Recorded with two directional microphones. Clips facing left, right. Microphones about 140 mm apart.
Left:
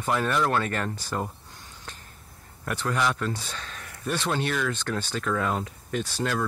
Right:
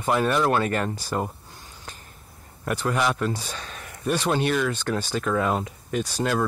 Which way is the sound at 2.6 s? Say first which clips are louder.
Right 3 dB; 10° right (ahead or behind).